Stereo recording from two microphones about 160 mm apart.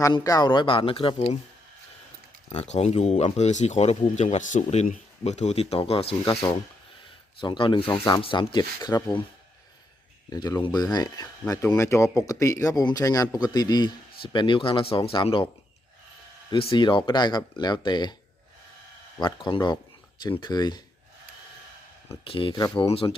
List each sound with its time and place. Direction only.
0.0 s speech: 20° left (ahead or behind); by 1.4 s 40° left (ahead or behind)
2.5 s speech: 40° left (ahead or behind)
7.3 s speech: 30° left (ahead or behind)
10.2 s speech: 25° left (ahead or behind)
16.5 s speech: 30° left (ahead or behind)
19.5 s speech: 30° left (ahead or behind)
22.2 s speech: 35° left (ahead or behind)